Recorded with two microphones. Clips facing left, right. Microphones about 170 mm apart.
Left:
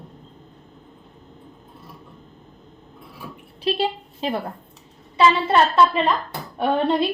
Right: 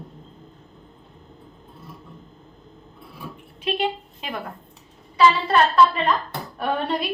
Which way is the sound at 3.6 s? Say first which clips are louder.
Left 2 dB; 35° left (ahead or behind).